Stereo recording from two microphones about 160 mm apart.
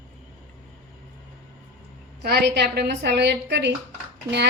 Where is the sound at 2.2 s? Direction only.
90° right.